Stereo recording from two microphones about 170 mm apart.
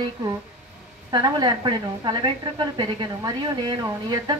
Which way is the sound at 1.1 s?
25° right (ahead or behind).